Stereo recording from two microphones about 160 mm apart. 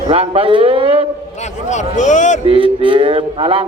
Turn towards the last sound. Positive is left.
turn(degrees=-30)  # may be behind; listen again after turning